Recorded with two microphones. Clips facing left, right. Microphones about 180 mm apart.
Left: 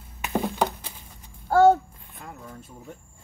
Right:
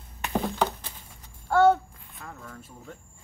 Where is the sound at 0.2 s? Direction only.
5° left (ahead or behind).